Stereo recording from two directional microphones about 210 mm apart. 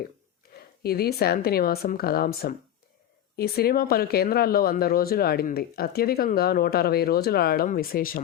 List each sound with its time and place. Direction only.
0.5 s speech: 45° left (ahead or behind)